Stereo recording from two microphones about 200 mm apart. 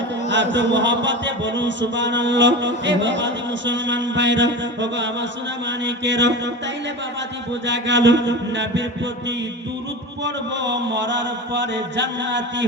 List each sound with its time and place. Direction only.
0.3 s mantra: 65° right (ahead or behind)
7.7 s mantra: 65° right (ahead or behind)
10.2 s mantra: 65° right (ahead or behind)